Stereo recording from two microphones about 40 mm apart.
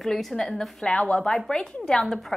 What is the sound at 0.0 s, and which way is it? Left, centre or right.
Speech, centre.